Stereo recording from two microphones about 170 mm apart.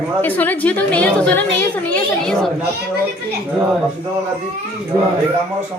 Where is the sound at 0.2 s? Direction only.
10° left (ahead or behind).